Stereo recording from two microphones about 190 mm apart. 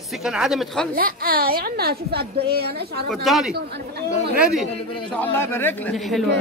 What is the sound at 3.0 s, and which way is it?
Speech, centre (ahead or behind).